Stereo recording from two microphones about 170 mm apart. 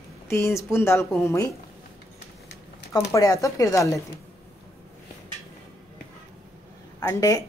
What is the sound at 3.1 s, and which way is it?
Speech, 20° left (ahead or behind).